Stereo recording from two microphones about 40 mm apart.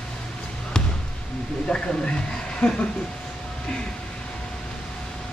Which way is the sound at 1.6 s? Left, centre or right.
Left.